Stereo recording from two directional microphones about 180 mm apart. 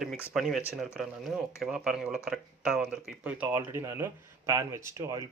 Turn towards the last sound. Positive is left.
turn(degrees=-15)  # may be behind; listen again after turning